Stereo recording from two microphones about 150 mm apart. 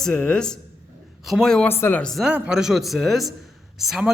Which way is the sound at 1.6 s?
15° left (ahead or behind).